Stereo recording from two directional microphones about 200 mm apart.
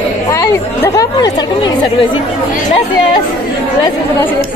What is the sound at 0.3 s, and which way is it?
A woman's voice, 15° left (ahead or behind).